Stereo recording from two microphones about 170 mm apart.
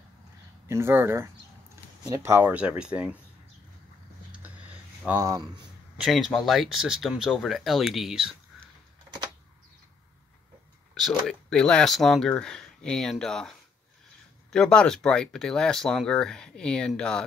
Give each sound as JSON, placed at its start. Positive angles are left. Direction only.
{"t": 0.7, "sound": "speech", "side_deg": -15}
{"t": 5.0, "sound": "speech", "side_deg": -15}
{"t": 5.9, "sound": "speech", "side_deg": 0}
{"t": 11.0, "sound": "speech", "side_deg": 0}